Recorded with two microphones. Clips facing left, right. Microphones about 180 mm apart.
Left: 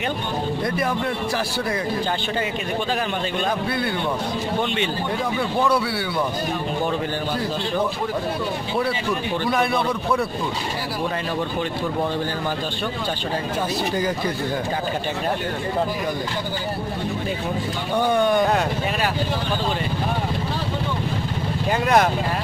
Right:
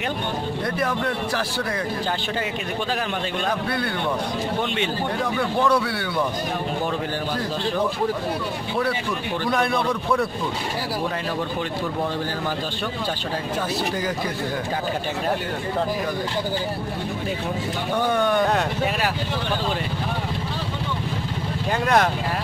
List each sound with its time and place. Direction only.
9.5 s a man's voice: 5° left (ahead or behind)
18.1 s speech: 15° left (ahead or behind)
21.8 s speech: 10° left (ahead or behind)